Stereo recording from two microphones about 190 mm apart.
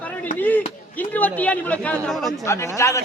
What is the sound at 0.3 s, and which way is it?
A man's voice, 10° left (ahead or behind).